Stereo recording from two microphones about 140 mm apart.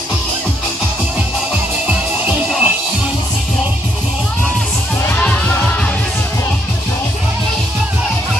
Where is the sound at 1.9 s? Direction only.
5° right (ahead or behind).